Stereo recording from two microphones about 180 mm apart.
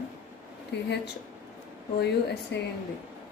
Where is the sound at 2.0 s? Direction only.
70° left (ahead or behind).